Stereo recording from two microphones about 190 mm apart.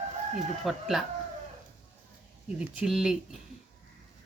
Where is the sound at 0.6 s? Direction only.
Centre (ahead or behind).